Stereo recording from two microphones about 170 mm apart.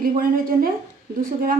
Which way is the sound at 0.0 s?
55° right (ahead or behind).